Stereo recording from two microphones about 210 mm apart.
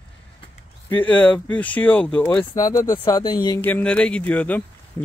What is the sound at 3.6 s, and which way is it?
A man's voice, 10° left (ahead or behind).